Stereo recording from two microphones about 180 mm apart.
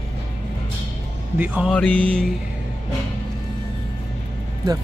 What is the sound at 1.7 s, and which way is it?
Music, 5° left (ahead or behind).